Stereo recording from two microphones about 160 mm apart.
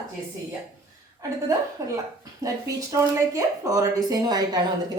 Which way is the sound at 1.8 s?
20° right (ahead or behind).